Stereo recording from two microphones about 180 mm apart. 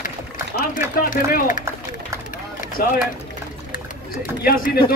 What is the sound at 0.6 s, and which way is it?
A man's voice, 55° left (ahead or behind).